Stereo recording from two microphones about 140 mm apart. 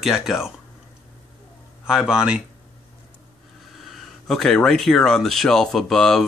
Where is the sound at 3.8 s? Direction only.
Centre (ahead or behind).